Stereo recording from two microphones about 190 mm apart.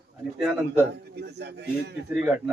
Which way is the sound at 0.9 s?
60° right (ahead or behind).